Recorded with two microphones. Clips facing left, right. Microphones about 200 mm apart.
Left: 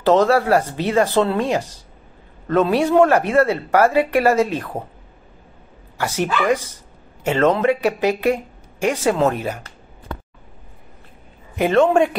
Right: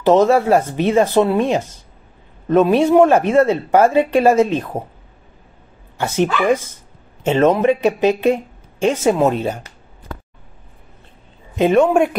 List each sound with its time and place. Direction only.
0.0 s speech: 20° right (ahead or behind)
5.9 s speech: 25° right (ahead or behind)
11.5 s a man's voice: 15° right (ahead or behind)